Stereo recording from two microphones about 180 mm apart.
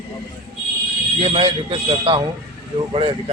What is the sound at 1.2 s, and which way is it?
A man's voice, 30° right (ahead or behind).